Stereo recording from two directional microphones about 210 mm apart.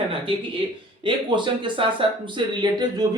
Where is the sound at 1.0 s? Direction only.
20° right (ahead or behind).